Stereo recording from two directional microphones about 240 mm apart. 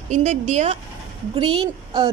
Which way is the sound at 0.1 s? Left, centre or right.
Right.